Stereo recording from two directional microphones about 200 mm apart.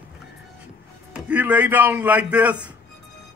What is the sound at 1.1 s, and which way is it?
A man's voice, 5° right (ahead or behind).